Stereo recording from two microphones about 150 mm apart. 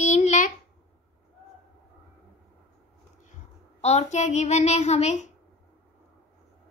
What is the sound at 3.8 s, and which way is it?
Speech, 50° left (ahead or behind).